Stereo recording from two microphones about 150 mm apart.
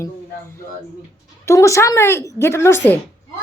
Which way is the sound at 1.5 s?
20° left (ahead or behind).